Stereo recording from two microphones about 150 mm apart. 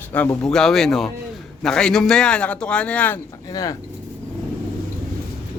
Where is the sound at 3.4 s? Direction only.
25° left (ahead or behind).